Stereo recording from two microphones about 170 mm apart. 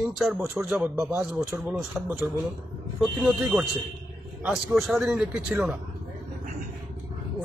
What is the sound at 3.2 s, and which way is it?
Speech, 10° right (ahead or behind).